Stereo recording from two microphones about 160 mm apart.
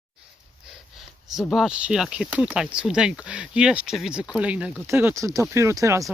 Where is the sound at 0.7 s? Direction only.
Centre (ahead or behind); by 6.0 s 20° right (ahead or behind).